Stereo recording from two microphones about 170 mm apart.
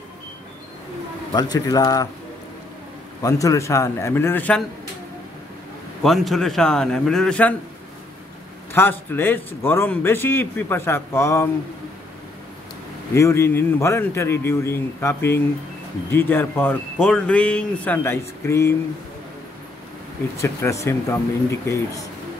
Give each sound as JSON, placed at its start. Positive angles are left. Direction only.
{"t": 1.3, "sound": "a man's voice", "side_deg": 25}
{"t": 3.2, "sound": "a man's voice", "side_deg": 20}
{"t": 6.0, "sound": "a man's voice", "side_deg": 0}
{"t": 8.7, "sound": "a man's voice", "side_deg": 10}
{"t": 13.1, "sound": "a man's voice", "side_deg": 15}
{"t": 20.3, "sound": "a man's voice", "side_deg": 15}